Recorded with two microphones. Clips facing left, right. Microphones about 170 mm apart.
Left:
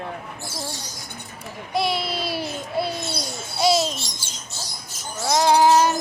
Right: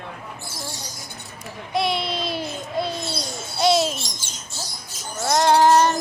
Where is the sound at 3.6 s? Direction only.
Centre (ahead or behind).